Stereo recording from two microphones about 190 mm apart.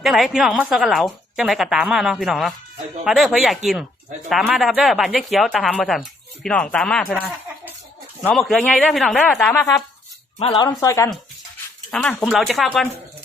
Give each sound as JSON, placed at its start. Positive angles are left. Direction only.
{"t": 0.0, "sound": "a woman's voice", "side_deg": 0}
{"t": 10.3, "sound": "speech", "side_deg": 30}
{"t": 11.9, "sound": "a woman's voice", "side_deg": 0}